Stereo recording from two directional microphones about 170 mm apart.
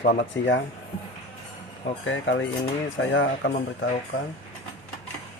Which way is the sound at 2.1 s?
90° left.